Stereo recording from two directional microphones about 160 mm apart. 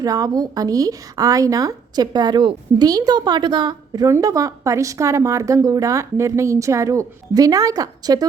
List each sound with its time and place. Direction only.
0.0 s a woman's voice: 25° right (ahead or behind)